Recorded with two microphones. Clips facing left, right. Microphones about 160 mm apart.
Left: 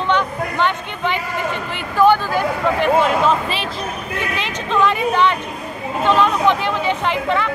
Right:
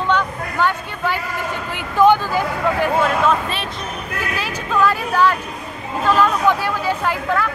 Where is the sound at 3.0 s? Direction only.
30° left (ahead or behind).